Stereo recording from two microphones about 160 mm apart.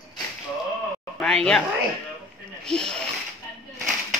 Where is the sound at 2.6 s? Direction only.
5° left (ahead or behind).